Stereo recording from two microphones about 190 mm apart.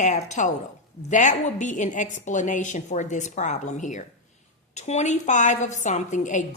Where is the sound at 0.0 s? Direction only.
40° left (ahead or behind).